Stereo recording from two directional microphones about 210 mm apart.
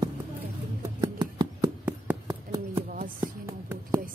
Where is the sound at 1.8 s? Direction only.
10° right (ahead or behind).